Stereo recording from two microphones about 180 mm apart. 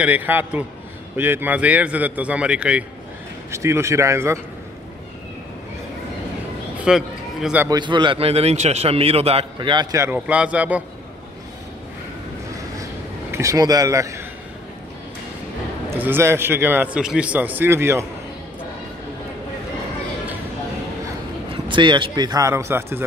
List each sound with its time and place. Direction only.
0.0 s a man's voice: 10° right (ahead or behind)
6.8 s a man's voice: 5° right (ahead or behind)
7.7 s a man's voice: 25° right (ahead or behind); by 10.8 s 5° right (ahead or behind)
13.3 s speech: 15° right (ahead or behind)
15.9 s a man's voice: 15° right (ahead or behind)
21.6 s a man's voice: 25° right (ahead or behind)